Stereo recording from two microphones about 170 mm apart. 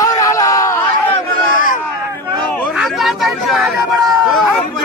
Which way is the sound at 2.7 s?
Centre (ahead or behind).